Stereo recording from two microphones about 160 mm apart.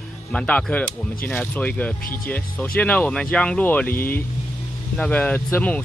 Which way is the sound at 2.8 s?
10° left (ahead or behind).